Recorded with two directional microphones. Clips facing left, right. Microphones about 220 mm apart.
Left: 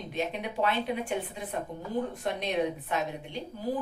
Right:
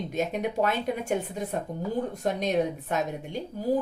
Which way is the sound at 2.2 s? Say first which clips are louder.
Right 6 dB; 45° right (ahead or behind).